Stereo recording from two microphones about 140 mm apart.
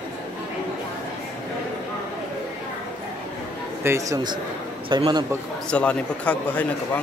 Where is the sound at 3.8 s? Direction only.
25° right (ahead or behind).